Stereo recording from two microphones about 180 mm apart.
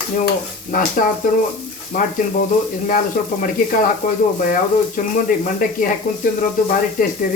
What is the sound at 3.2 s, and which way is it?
Speech, 50° left (ahead or behind).